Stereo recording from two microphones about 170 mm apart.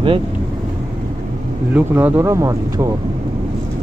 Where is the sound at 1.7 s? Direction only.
10° right (ahead or behind).